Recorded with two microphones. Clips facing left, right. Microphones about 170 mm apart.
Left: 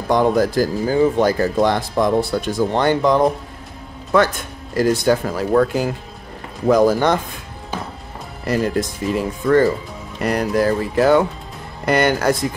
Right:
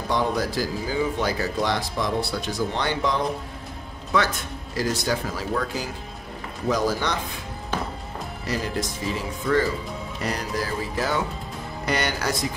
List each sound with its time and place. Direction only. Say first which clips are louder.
0.1 s speech: left 9 dB; 50° left (ahead or behind)
8.5 s speech: left 9 dB; 55° left (ahead or behind)